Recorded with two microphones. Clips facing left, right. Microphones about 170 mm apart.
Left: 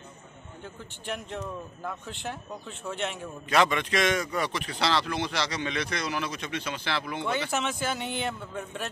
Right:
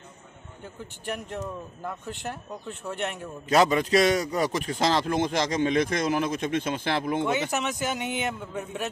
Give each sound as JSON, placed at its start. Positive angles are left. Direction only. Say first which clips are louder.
{"t": 1.0, "sound": "speech", "louder": "right 2 dB", "side_deg": -5}
{"t": 3.4, "sound": "a man's voice", "louder": "right 4 dB", "side_deg": -40}
{"t": 7.2, "sound": "a man's voice", "louder": "right 2 dB", "side_deg": -15}